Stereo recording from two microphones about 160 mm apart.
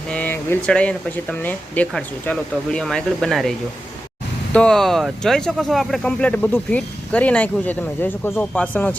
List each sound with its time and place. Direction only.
0.1 s speech: 10° left (ahead or behind)
4.5 s speech: 5° left (ahead or behind)